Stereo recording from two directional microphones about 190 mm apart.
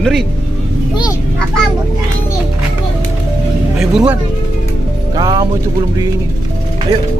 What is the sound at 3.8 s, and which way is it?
Speech, 5° right (ahead or behind).